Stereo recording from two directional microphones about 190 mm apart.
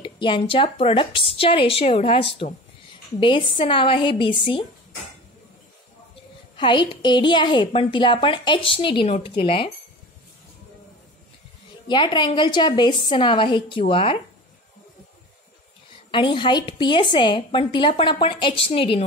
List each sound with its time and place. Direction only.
0.0 s a woman's voice: 25° left (ahead or behind)
6.5 s a woman's voice: 25° left (ahead or behind)
11.9 s a woman's voice: 25° left (ahead or behind)
16.3 s a woman's voice: 25° left (ahead or behind)